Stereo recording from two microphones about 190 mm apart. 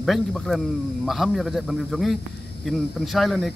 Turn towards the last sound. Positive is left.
turn(degrees=0)  # may be behind; listen again after turning